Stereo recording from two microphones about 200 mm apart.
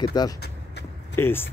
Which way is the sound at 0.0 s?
20° left (ahead or behind).